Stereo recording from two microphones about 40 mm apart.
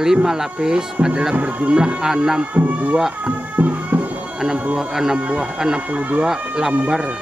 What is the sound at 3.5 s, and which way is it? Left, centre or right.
Music, right.